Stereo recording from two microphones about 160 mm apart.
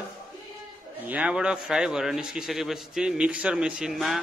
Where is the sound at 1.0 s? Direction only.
10° right (ahead or behind).